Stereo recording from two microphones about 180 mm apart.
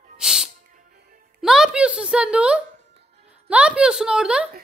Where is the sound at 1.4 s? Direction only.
5° right (ahead or behind).